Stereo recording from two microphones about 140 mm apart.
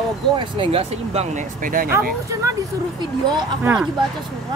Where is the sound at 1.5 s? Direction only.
80° right.